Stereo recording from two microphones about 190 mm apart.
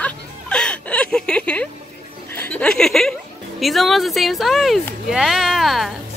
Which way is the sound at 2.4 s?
10° left (ahead or behind).